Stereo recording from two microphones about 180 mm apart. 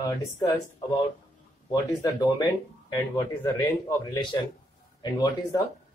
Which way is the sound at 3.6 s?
20° left (ahead or behind).